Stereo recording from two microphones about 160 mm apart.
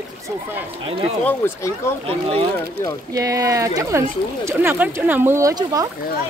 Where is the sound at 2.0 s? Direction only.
35° right (ahead or behind).